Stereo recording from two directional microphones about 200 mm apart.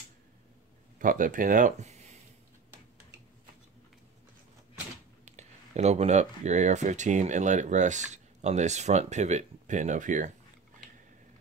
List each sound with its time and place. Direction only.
0.9 s speech: 40° right (ahead or behind)
5.2 s speech: 35° right (ahead or behind)